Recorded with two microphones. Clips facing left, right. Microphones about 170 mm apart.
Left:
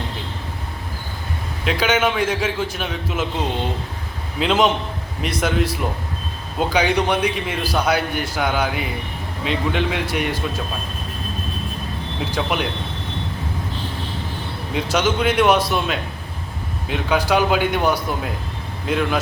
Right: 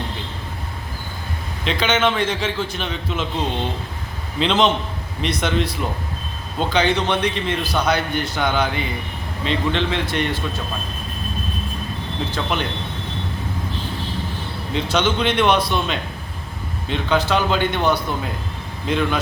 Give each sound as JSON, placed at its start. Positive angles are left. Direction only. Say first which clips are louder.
{"t": 1.6, "sound": "a man's voice", "louder": "even", "side_deg": 10}
{"t": 4.4, "sound": "a man's voice", "louder": "even", "side_deg": 5}
{"t": 12.3, "sound": "a man's voice", "louder": "left 2 dB", "side_deg": 10}
{"t": 14.7, "sound": "a man's voice", "louder": "even", "side_deg": 10}
{"t": 16.9, "sound": "a man's voice", "louder": "left 1 dB", "side_deg": 10}